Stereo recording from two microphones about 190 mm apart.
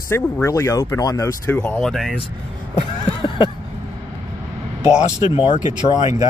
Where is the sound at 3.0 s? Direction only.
25° left (ahead or behind).